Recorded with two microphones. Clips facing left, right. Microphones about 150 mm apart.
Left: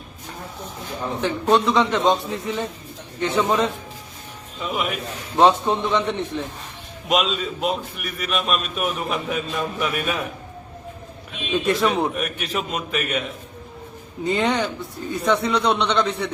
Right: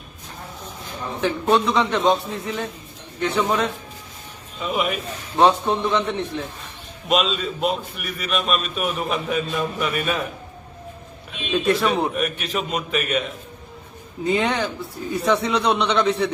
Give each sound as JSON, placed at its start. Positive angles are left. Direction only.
{"t": 1.2, "sound": "a man's voice", "side_deg": 0}
{"t": 4.6, "sound": "a man's voice", "side_deg": 0}
{"t": 7.1, "sound": "a man's voice", "side_deg": 10}
{"t": 7.6, "sound": "a man's voice", "side_deg": 0}
{"t": 11.5, "sound": "a man's voice", "side_deg": 0}
{"t": 14.3, "sound": "a man's voice", "side_deg": 0}